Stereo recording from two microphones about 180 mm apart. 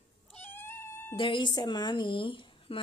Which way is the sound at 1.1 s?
30° left (ahead or behind).